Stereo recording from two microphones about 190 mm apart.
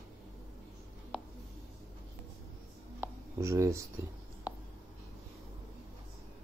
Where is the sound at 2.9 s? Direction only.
15° right (ahead or behind).